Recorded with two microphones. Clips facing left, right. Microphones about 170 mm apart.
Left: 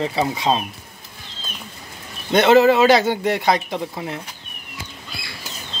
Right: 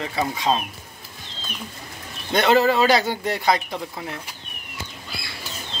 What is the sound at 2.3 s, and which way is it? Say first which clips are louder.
A man's voice: left 5 dB; 20° left (ahead or behind).